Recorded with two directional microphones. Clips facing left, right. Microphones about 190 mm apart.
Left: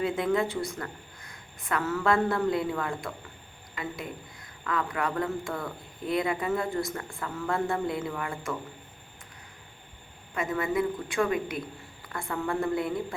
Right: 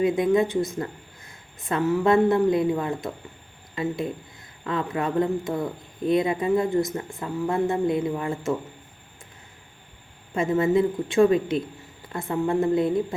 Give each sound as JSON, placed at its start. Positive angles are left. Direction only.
{"t": 0.0, "sound": "speech", "side_deg": -20}
{"t": 10.3, "sound": "speech", "side_deg": -25}